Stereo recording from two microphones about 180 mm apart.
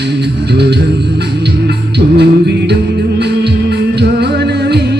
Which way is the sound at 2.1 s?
70° right (ahead or behind).